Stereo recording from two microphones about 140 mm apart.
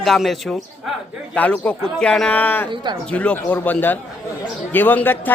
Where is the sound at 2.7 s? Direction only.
35° right (ahead or behind).